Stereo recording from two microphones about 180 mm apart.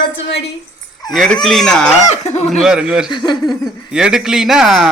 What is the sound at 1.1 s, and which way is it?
Speech, centre (ahead or behind).